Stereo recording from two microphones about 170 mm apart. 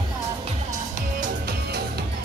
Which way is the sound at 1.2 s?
65° right (ahead or behind).